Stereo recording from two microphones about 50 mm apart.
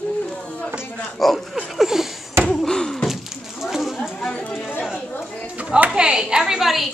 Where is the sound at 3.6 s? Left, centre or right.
Centre.